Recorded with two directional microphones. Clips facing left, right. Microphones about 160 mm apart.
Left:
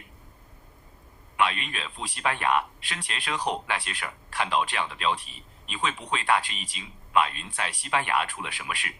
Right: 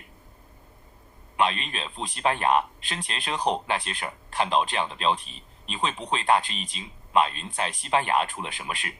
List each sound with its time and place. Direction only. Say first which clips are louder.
1.4 s speech: right 1 dB; 30° right (ahead or behind)